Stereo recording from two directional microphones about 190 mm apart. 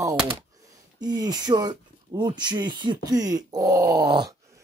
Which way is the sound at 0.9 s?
20° right (ahead or behind).